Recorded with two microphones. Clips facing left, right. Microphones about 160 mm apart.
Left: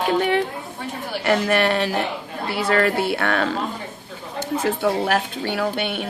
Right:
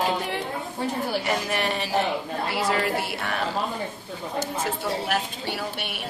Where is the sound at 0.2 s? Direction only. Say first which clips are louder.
Left 10 dB; 65° left (ahead or behind).